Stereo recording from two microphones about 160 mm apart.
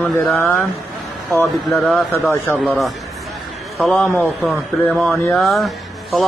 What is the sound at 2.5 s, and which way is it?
A man's voice, centre (ahead or behind).